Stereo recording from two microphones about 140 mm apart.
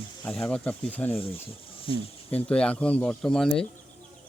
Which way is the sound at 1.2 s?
40° left (ahead or behind).